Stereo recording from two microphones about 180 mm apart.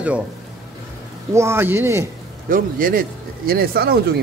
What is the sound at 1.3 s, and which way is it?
Speech, 15° right (ahead or behind).